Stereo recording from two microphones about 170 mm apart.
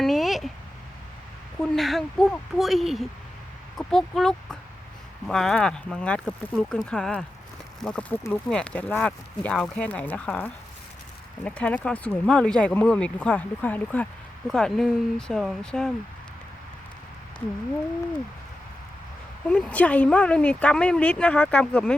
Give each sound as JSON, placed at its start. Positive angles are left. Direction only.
{"t": 0.0, "sound": "a sound", "side_deg": 0}
{"t": 1.6, "sound": "a woman's voice", "side_deg": 0}
{"t": 19.5, "sound": "speech", "side_deg": 5}